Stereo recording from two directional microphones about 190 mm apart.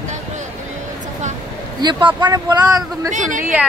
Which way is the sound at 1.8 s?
25° right (ahead or behind).